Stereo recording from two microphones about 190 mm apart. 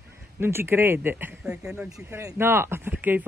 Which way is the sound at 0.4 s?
10° right (ahead or behind).